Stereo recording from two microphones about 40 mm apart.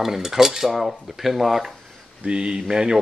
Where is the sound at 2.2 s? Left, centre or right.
Right.